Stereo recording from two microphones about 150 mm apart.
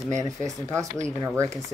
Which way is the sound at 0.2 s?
20° right (ahead or behind).